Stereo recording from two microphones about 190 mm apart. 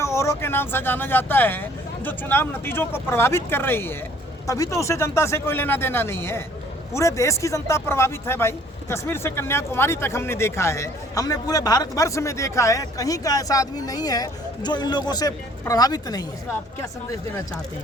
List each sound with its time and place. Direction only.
0.0 s speech: 15° left (ahead or behind)